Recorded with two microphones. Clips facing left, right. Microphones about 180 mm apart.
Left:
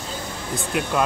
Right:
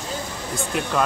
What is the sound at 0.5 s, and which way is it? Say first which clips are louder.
Speech: even; 5° left (ahead or behind).